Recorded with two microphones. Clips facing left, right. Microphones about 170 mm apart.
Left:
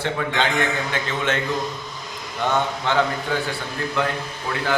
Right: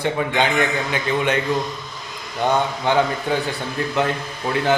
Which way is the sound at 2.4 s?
15° right (ahead or behind).